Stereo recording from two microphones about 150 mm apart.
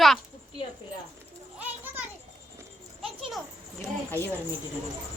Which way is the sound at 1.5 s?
10° right (ahead or behind).